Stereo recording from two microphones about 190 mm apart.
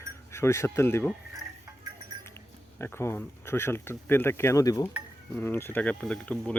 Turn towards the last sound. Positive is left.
turn(degrees=5)  # may be behind; listen again after turning